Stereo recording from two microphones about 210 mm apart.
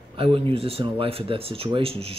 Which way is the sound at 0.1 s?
25° right (ahead or behind).